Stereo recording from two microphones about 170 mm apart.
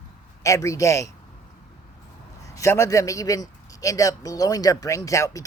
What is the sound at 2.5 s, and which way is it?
Speech, 15° left (ahead or behind).